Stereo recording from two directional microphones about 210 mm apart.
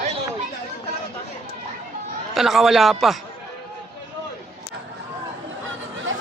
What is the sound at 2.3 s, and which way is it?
Speech, centre (ahead or behind).